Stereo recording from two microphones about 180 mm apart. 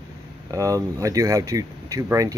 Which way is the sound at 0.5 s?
20° right (ahead or behind).